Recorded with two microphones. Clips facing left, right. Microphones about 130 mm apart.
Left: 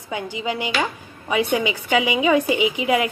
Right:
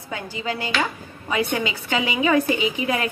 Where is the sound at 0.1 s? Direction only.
20° left (ahead or behind).